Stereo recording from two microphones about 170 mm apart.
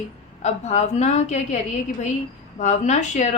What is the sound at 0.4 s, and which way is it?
Speech, 40° left (ahead or behind).